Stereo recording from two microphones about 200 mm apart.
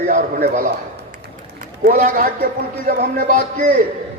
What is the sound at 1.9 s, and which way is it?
A man's voice, 45° right (ahead or behind).